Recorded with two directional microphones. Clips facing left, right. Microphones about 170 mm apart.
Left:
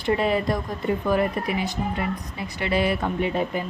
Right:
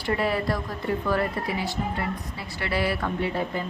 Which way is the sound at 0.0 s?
20° left (ahead or behind).